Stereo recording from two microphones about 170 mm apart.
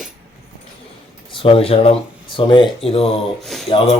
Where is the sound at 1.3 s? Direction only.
35° left (ahead or behind).